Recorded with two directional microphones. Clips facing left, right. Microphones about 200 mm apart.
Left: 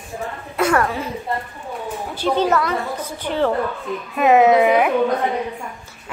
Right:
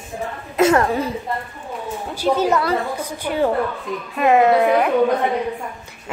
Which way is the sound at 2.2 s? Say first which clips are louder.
Even; 10° right (ahead or behind).